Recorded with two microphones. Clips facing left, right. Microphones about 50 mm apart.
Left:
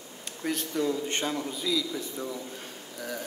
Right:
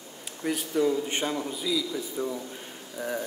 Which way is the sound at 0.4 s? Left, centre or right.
Centre.